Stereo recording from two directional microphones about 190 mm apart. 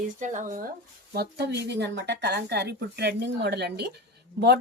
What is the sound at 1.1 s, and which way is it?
A woman's voice, 60° right (ahead or behind).